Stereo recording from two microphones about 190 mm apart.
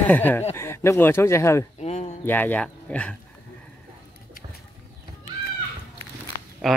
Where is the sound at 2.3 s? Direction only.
10° left (ahead or behind).